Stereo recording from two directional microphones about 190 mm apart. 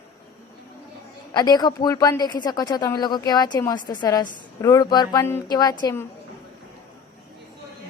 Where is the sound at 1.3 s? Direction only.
20° left (ahead or behind).